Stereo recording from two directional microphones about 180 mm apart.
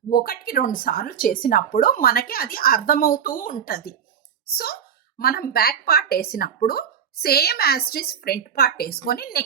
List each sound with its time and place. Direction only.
0.1 s a woman's voice: 55° left (ahead or behind)